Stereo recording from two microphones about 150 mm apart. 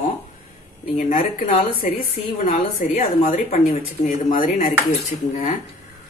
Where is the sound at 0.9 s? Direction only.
60° left (ahead or behind).